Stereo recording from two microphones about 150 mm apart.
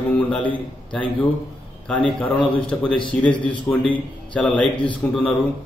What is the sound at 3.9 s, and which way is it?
Speech, 10° left (ahead or behind).